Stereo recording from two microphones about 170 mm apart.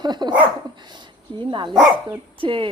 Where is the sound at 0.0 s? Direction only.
25° right (ahead or behind).